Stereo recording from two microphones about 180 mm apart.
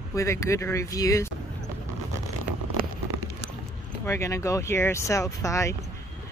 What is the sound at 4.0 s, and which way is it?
Speech, 15° left (ahead or behind).